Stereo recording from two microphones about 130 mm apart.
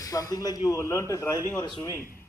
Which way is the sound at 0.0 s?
25° left (ahead or behind).